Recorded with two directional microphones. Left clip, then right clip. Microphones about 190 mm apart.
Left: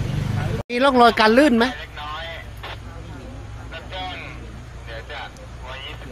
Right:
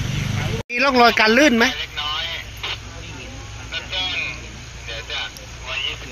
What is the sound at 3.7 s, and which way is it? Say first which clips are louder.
Vehicle: right 7 dB; 40° left (ahead or behind).